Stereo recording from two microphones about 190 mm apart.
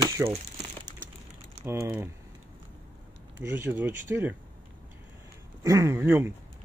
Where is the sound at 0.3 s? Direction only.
35° right (ahead or behind).